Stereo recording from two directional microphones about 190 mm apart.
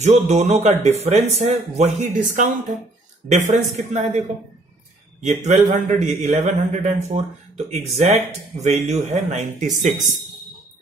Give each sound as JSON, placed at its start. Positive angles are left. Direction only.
{"t": 0.0, "sound": "speech", "side_deg": -35}
{"t": 5.2, "sound": "speech", "side_deg": -35}